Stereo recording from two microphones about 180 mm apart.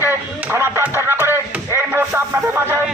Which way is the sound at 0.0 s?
10° right (ahead or behind).